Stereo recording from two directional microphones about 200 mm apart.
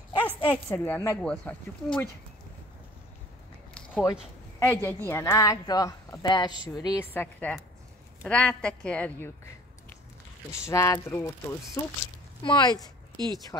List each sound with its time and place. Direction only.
0.5 s a woman's voice: 10° left (ahead or behind)
3.7 s a woman's voice: 5° left (ahead or behind)
10.6 s a woman's voice: 15° left (ahead or behind)